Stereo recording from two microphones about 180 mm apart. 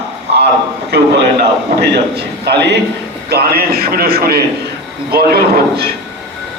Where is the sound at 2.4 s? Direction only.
70° right (ahead or behind).